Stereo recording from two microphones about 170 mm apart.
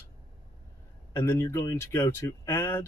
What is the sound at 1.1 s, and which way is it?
Speech, 15° left (ahead or behind).